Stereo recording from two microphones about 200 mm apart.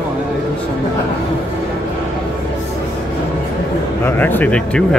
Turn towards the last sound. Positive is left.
turn(degrees=5)  # may be behind; listen again after turning